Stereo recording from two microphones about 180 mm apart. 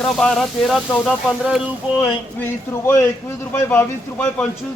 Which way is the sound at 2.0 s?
15° left (ahead or behind).